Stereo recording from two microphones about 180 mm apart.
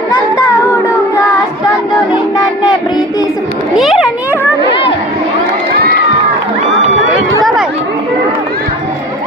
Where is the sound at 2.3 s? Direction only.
20° left (ahead or behind).